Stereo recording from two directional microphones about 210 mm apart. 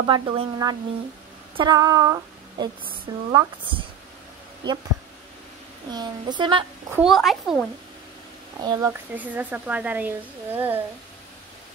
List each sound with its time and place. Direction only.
0.0 s a woman's voice: 25° right (ahead or behind)
5.9 s a woman's voice: 20° right (ahead or behind)
6.9 s a child's voice: centre (ahead or behind)
8.5 s speech: 15° right (ahead or behind)